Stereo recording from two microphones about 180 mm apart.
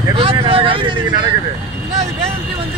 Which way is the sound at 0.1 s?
30° right (ahead or behind).